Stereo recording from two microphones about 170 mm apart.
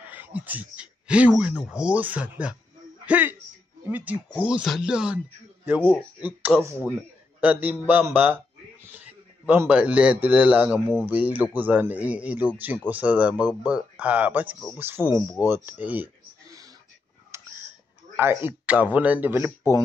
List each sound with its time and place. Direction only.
0.1 s a man's voice: 10° right (ahead or behind)
6.2 s a man's voice: 10° right (ahead or behind)
9.5 s a man's voice: 10° right (ahead or behind)
17.3 s whispering: 15° right (ahead or behind)
18.1 s a man's voice: 10° right (ahead or behind)